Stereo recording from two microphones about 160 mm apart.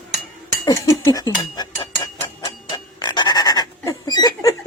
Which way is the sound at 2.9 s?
25° left (ahead or behind).